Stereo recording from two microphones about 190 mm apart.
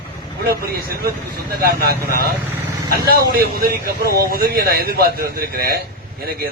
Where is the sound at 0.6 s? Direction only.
55° right (ahead or behind).